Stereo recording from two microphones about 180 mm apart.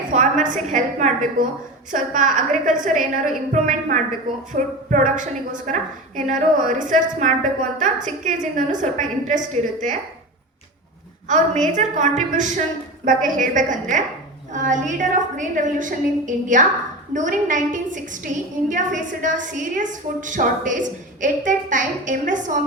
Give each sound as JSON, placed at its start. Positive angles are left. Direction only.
{"t": 0.1, "sound": "a woman's voice", "side_deg": -45}
{"t": 11.3, "sound": "a woman's voice", "side_deg": -40}